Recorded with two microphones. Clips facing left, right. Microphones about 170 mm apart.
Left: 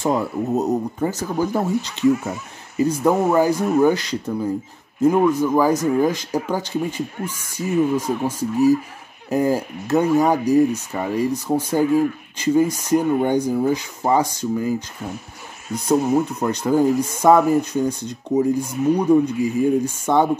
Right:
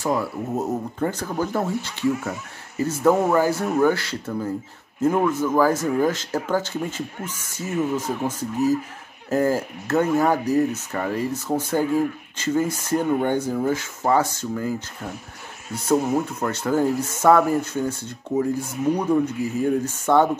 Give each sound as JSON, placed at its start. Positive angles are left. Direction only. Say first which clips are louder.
{"t": 0.0, "sound": "speech", "louder": "left 3 dB", "side_deg": 20}
{"t": 15.7, "sound": "speech", "louder": "left 3 dB", "side_deg": 15}